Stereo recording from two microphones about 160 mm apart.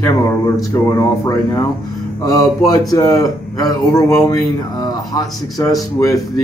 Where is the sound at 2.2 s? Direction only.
25° left (ahead or behind).